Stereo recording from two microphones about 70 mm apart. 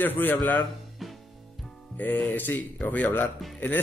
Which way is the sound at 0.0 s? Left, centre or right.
Left.